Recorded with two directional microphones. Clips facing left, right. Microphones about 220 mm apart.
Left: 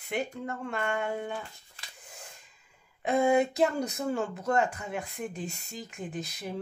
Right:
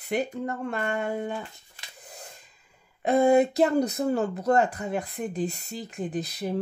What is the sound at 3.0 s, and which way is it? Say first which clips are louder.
Speech: right 5 dB; 35° right (ahead or behind).